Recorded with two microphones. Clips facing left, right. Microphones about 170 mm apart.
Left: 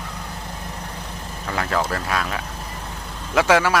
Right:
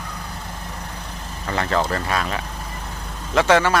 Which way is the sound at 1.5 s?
Centre (ahead or behind).